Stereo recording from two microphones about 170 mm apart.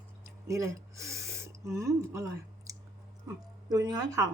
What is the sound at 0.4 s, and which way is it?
A woman's voice, 15° right (ahead or behind).